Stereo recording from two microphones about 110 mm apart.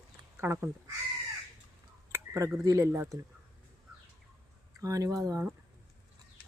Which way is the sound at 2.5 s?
30° right (ahead or behind).